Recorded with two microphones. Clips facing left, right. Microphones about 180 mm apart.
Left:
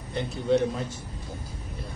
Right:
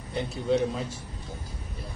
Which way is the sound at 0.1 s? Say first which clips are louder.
Left 2 dB; centre (ahead or behind).